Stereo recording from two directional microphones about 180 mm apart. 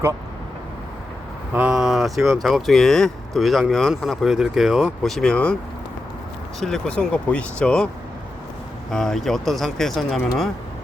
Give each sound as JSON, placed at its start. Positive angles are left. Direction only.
{"t": 1.5, "sound": "speech", "side_deg": -5}
{"t": 6.6, "sound": "speech", "side_deg": 0}
{"t": 8.9, "sound": "speech", "side_deg": 0}